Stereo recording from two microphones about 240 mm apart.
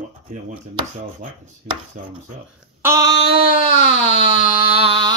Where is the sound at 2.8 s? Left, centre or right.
Centre.